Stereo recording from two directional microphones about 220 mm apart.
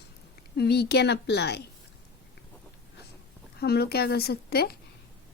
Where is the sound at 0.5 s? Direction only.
45° left (ahead or behind).